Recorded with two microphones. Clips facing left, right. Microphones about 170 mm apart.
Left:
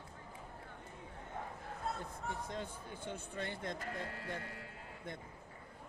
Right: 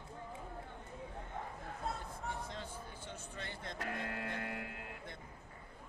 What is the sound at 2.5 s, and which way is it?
Speech, 50° left (ahead or behind).